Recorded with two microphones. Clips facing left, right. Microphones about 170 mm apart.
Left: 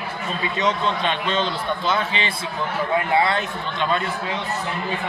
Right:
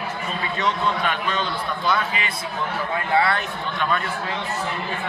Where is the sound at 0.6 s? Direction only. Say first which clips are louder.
Left 1 dB; 25° left (ahead or behind).